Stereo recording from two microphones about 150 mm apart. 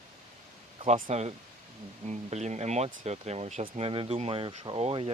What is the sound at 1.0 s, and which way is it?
Speech, 50° right (ahead or behind).